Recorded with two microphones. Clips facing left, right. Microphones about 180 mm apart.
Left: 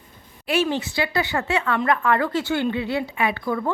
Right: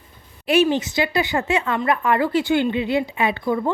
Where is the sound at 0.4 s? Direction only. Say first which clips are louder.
Right 5 dB; 15° right (ahead or behind).